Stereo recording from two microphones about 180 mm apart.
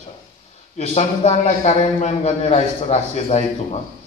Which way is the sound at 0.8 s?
35° left (ahead or behind).